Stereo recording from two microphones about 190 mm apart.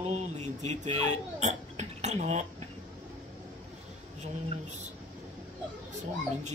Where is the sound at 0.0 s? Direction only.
35° right (ahead or behind).